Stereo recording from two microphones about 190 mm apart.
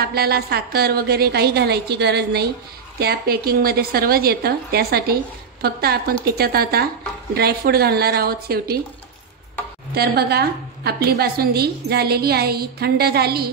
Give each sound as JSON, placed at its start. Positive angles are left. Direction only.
{"t": 0.0, "sound": "a woman's voice", "side_deg": -55}
{"t": 9.9, "sound": "a woman's voice", "side_deg": -55}